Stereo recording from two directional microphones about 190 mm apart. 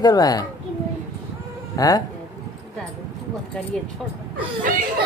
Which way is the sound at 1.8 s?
20° left (ahead or behind).